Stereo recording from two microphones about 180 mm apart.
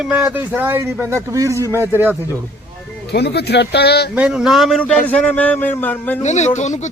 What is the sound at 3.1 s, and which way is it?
Speech, 65° left (ahead or behind).